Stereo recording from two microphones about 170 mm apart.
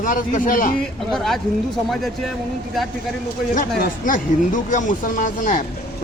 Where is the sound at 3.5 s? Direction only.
50° left (ahead or behind).